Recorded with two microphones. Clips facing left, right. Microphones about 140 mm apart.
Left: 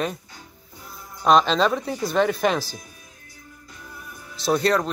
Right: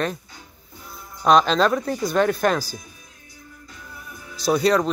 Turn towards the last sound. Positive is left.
turn(degrees=0)  # may be behind; listen again after turning